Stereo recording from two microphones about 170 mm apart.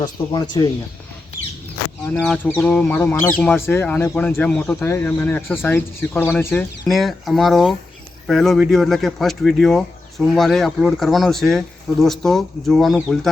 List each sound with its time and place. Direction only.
0.0 s speech: 25° left (ahead or behind)
2.0 s speech: 10° left (ahead or behind)
6.8 s speech: centre (ahead or behind)